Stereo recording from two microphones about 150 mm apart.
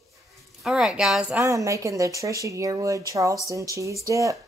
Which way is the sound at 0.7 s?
5° right (ahead or behind).